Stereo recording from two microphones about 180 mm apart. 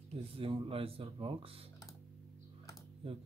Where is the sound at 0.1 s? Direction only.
30° right (ahead or behind).